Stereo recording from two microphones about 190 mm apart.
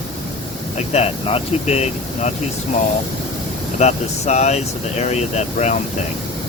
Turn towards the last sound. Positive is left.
turn(degrees=35)  # may be behind; listen again after turning